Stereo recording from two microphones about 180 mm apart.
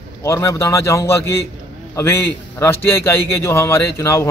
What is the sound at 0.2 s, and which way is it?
Speech, 15° left (ahead or behind).